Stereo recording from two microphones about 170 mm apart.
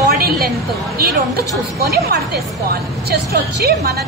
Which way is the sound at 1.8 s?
70° right (ahead or behind).